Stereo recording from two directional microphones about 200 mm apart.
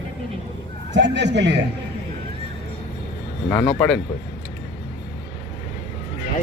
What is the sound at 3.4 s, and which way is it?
Speech, 10° left (ahead or behind).